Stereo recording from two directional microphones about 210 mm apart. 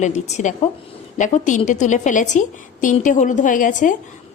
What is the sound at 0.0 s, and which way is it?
A woman's voice, 35° left (ahead or behind).